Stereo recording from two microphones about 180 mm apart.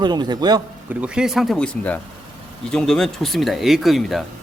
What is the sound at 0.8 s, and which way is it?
Speech, 5° right (ahead or behind).